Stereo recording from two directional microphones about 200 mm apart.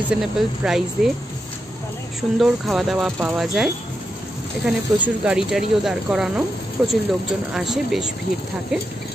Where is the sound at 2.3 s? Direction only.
Centre (ahead or behind).